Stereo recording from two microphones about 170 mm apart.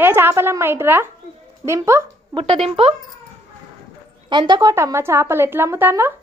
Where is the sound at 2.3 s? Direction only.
35° right (ahead or behind).